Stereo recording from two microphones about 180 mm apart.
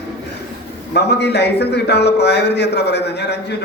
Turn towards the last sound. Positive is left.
turn(degrees=70)  # may be behind; listen again after turning